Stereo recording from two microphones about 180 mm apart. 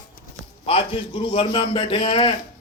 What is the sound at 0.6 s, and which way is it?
A man's voice, 30° left (ahead or behind).